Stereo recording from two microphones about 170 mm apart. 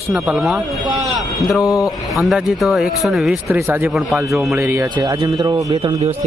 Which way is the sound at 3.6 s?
10° right (ahead or behind).